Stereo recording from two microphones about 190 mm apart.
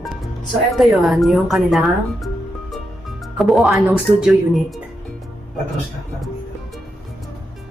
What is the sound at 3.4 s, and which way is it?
Speech, centre (ahead or behind).